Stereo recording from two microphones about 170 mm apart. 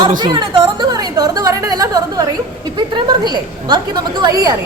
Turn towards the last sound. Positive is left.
turn(degrees=-25)  # may be behind; listen again after turning